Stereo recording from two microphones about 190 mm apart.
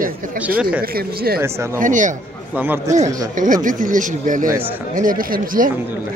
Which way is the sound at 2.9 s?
40° right (ahead or behind).